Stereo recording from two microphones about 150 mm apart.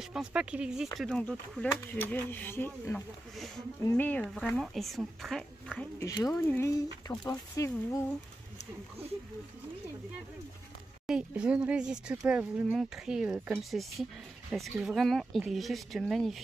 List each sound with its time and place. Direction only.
0.0 s speech: 5° right (ahead or behind)
0.9 s speech: 5° left (ahead or behind)
3.3 s speech: centre (ahead or behind)
5.9 s speech: 20° left (ahead or behind)
11.1 s speech: 5° right (ahead or behind)